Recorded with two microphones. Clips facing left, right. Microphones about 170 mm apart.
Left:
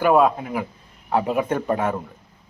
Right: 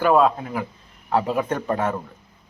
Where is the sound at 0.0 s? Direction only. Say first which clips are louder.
Left 1 dB; 10° left (ahead or behind).